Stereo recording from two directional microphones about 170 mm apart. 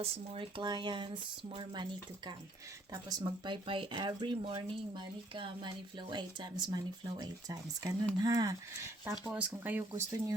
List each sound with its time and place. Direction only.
0.0 s speech: 30° right (ahead or behind)
9.2 s speech: 10° right (ahead or behind)